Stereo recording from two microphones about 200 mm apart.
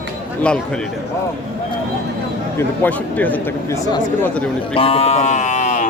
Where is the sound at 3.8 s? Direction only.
20° left (ahead or behind).